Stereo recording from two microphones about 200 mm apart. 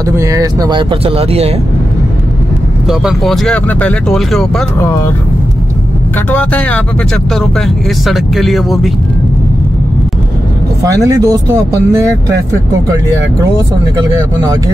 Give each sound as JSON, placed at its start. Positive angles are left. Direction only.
{"t": 0.1, "sound": "speech", "side_deg": -15}
{"t": 2.9, "sound": "speech", "side_deg": 0}
{"t": 4.7, "sound": "speech", "side_deg": 15}
{"t": 6.3, "sound": "speech", "side_deg": 5}
{"t": 10.8, "sound": "speech", "side_deg": -15}